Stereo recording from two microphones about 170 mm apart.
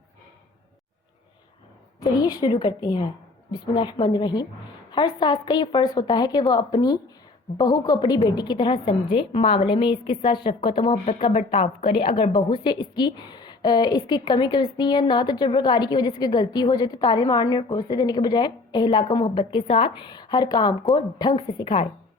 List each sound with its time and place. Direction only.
2.0 s a woman's voice: 25° left (ahead or behind)